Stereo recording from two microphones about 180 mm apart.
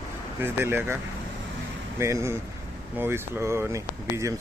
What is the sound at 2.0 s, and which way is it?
Speech, 15° right (ahead or behind).